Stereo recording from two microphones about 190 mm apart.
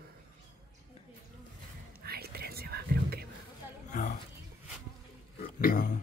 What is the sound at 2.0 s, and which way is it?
Whispering, 55° right (ahead or behind).